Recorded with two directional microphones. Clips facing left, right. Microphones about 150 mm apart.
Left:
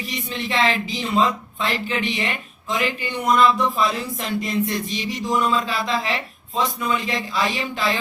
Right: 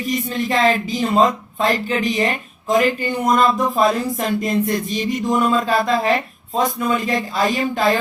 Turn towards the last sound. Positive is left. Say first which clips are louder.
# right 6 dB
turn(degrees=-45)  # may be behind; listen again after turning